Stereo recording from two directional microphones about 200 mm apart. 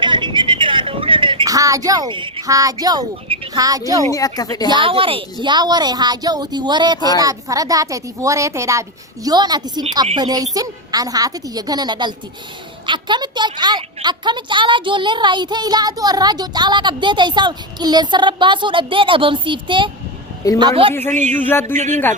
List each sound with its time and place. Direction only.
0.0 s a sound: 25° right (ahead or behind)
4.1 s speech: 20° left (ahead or behind)
4.7 s a woman's voice: 25° right (ahead or behind)
21.4 s speech: 10° left (ahead or behind)
21.8 s speech: 35° right (ahead or behind)